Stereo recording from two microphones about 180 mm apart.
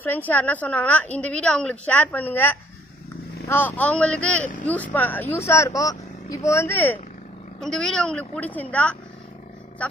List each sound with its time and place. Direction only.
0.0 s a woman's voice: 10° left (ahead or behind)